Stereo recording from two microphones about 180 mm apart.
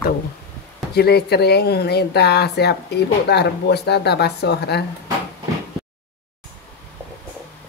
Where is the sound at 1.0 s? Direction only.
65° left (ahead or behind).